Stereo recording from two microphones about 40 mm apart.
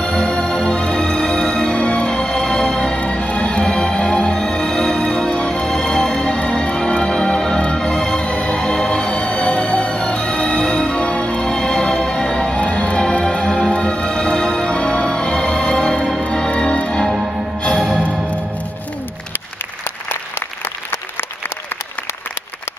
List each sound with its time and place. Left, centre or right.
0.0 s music: centre
0.8 s music: left
3.0 s music: left
11.4 s music: centre
17.6 s music: centre